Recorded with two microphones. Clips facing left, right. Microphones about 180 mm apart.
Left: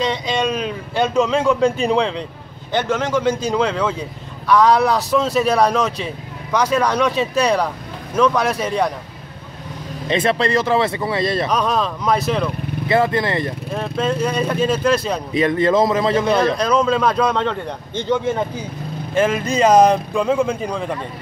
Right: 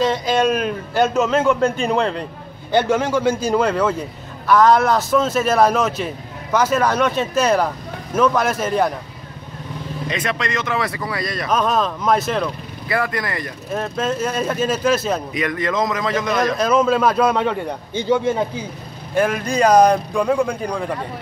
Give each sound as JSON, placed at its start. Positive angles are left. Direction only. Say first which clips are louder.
{"t": 0.0, "sound": "a man's voice", "louder": "right 3 dB", "side_deg": -5}
{"t": 10.0, "sound": "speech", "louder": "left 7 dB", "side_deg": 30}
{"t": 11.4, "sound": "a man's voice", "louder": "even", "side_deg": 0}
{"t": 12.8, "sound": "speech", "louder": "left 5 dB", "side_deg": 25}
{"t": 13.7, "sound": "a man's voice", "louder": "right 2 dB", "side_deg": -5}
{"t": 15.3, "sound": "speech", "louder": "left 6 dB", "side_deg": 25}
{"t": 16.5, "sound": "a man's voice", "louder": "right 1 dB", "side_deg": -5}
{"t": 19.1, "sound": "a man's voice", "louder": "left 1 dB", "side_deg": 0}